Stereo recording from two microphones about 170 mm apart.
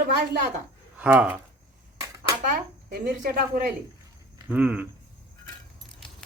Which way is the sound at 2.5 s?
55° right (ahead or behind).